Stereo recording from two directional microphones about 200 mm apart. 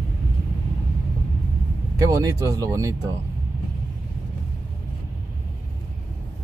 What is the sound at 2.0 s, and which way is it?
Speech, 15° right (ahead or behind).